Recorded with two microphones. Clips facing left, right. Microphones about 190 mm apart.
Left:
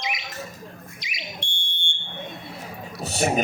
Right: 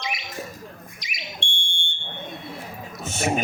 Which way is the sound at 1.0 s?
45° right (ahead or behind).